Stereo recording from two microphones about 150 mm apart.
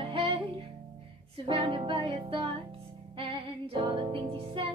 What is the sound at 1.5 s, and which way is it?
Music, 35° right (ahead or behind).